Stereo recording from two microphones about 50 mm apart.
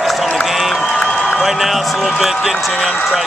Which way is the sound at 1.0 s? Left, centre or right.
Left.